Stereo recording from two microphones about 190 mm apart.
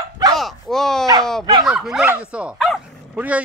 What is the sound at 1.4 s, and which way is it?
Speech, 25° right (ahead or behind).